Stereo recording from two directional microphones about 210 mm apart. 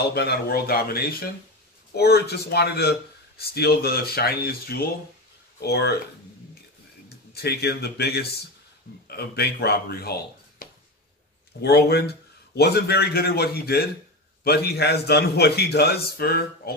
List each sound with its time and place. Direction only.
0.1 s speech: 50° left (ahead or behind)
7.3 s speech: 50° left (ahead or behind)
10.6 s a sound: 40° left (ahead or behind)
11.6 s speech: 50° left (ahead or behind)